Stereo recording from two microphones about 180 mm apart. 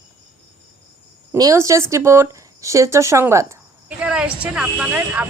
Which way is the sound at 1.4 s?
20° right (ahead or behind).